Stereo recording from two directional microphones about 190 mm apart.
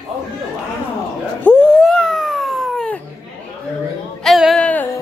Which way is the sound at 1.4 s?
5° left (ahead or behind).